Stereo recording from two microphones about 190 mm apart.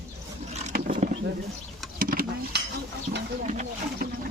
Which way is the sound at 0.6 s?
40° right (ahead or behind).